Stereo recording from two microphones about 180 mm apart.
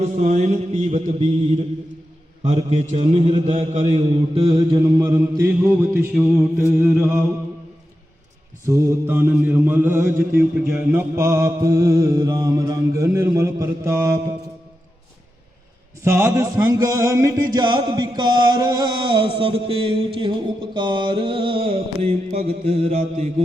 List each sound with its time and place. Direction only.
0.0 s mantra: 40° right (ahead or behind)
2.7 s mantra: 35° right (ahead or behind); by 7.2 s 5° right (ahead or behind)
8.6 s mantra: 15° right (ahead or behind)
16.0 s a sound: 15° right (ahead or behind); by 22.4 s 35° right (ahead or behind)
22.6 s mantra: 35° right (ahead or behind)